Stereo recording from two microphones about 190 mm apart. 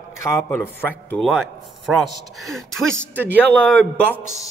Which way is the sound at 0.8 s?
10° left (ahead or behind).